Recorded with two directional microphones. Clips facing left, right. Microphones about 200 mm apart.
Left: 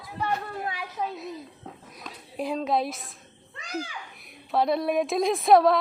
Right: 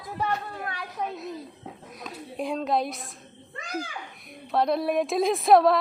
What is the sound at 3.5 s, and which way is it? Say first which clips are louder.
Children playing: even; 50° right (ahead or behind).